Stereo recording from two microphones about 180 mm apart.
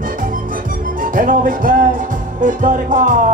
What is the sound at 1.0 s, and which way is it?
Music, 50° right (ahead or behind).